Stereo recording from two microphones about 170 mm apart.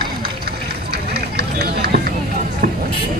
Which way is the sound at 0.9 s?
75° right (ahead or behind).